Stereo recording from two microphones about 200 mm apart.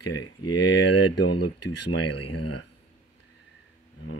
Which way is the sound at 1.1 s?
55° left (ahead or behind).